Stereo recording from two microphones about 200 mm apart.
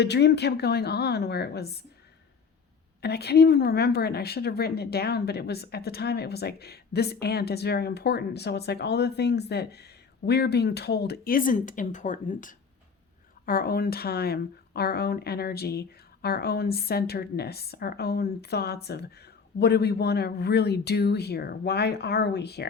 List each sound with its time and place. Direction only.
0.0 s speech: 55° left (ahead or behind)
3.0 s a woman's voice: 55° left (ahead or behind)